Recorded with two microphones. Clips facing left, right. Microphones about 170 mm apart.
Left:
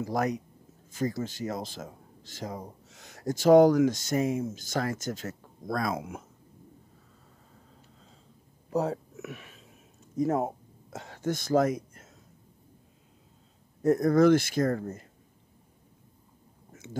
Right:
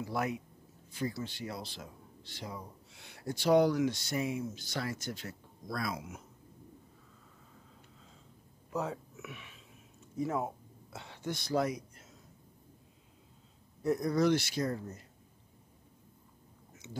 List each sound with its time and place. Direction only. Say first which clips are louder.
0.0 s speech: left 6 dB; 40° left (ahead or behind)
8.6 s a sound: left 7 dB; 40° left (ahead or behind)
13.8 s speech: left 8 dB; 50° left (ahead or behind)